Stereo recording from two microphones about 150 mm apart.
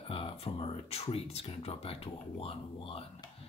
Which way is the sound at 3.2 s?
25° left (ahead or behind).